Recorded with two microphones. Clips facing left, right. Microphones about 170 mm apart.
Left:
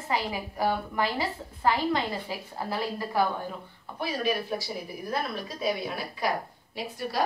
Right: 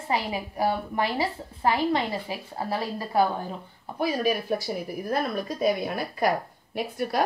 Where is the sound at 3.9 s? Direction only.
45° right (ahead or behind).